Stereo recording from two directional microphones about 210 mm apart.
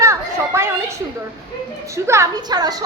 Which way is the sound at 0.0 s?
15° right (ahead or behind).